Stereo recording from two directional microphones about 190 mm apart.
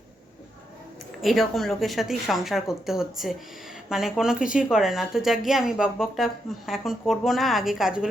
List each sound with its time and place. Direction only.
1.2 s speech: centre (ahead or behind)